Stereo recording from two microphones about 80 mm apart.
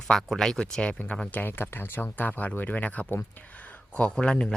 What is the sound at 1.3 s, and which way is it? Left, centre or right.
Speech, left.